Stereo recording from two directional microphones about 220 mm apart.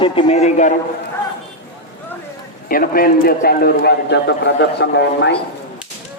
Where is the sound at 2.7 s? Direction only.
40° left (ahead or behind).